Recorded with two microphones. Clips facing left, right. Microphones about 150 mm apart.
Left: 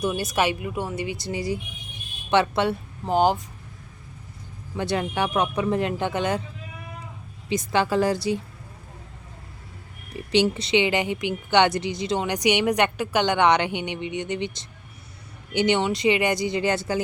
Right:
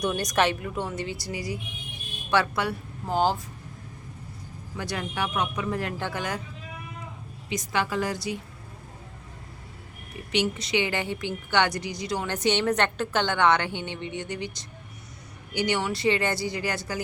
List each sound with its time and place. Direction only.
0.0 s a woman's voice: 5° left (ahead or behind)
4.8 s speech: 25° left (ahead or behind)
5.7 s speech: 20° left (ahead or behind)
7.5 s a woman's voice: 30° left (ahead or behind)
10.3 s a woman's voice: 30° left (ahead or behind)